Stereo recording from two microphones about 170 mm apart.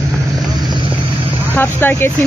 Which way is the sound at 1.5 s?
15° left (ahead or behind).